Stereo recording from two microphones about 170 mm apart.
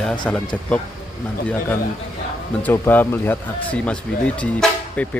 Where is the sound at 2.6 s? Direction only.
10° left (ahead or behind).